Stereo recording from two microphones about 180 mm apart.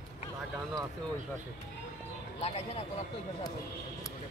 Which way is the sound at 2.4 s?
35° left (ahead or behind).